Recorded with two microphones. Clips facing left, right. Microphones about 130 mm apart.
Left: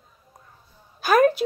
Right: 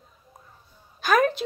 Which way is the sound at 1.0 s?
5° left (ahead or behind).